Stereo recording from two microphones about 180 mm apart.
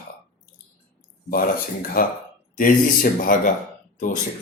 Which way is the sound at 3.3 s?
50° left (ahead or behind).